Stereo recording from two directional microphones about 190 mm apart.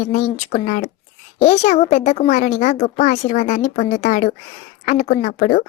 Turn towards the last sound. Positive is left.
turn(degrees=45)  # may be behind; listen again after turning